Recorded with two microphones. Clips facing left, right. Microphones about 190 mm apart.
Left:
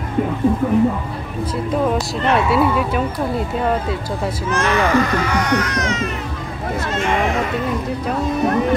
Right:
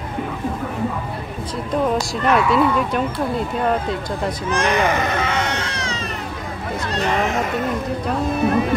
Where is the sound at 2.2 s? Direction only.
25° left (ahead or behind).